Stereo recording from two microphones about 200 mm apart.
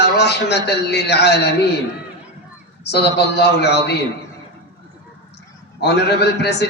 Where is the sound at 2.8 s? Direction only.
55° left (ahead or behind).